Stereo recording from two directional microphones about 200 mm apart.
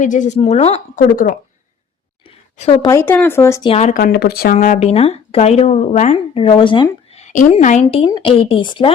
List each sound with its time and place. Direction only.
0.0 s speech: 40° left (ahead or behind)
2.2 s a sound: 25° left (ahead or behind)
2.9 s speech: 10° left (ahead or behind)
3.7 s speech: 35° left (ahead or behind); by 4.5 s 50° left (ahead or behind)
4.5 s speech: 40° left (ahead or behind)